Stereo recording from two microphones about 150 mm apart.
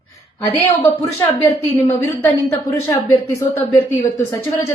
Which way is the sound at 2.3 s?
25° left (ahead or behind).